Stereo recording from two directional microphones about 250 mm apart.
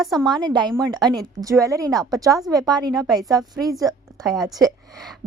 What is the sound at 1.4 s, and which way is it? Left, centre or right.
A woman's voice, centre.